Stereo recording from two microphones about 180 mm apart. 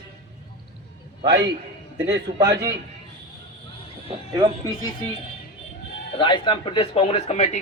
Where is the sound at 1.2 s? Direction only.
25° right (ahead or behind).